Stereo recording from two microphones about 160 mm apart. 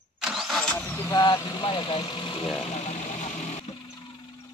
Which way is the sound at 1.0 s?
25° left (ahead or behind).